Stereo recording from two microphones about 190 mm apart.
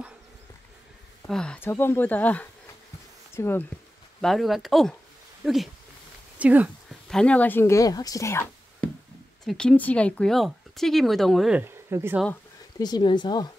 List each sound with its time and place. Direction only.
1.2 s speech: 5° left (ahead or behind)
4.2 s speech: centre (ahead or behind)
7.1 s speech: 5° left (ahead or behind); by 12.2 s 10° right (ahead or behind)
12.7 s speech: 20° left (ahead or behind)